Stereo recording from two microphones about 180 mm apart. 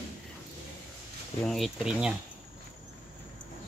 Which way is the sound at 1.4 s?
Centre (ahead or behind).